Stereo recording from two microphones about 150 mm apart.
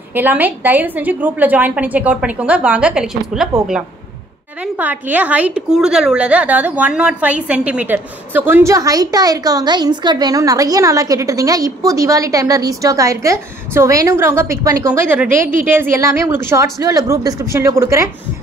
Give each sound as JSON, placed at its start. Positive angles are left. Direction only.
{"t": 0.1, "sound": "a woman's voice", "side_deg": -10}
{"t": 4.7, "sound": "a woman's voice", "side_deg": -10}